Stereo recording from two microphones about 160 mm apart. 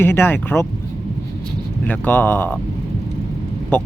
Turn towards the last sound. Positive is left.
turn(degrees=10)  # may be behind; listen again after turning